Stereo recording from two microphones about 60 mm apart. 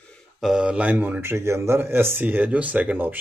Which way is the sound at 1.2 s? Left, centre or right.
Right.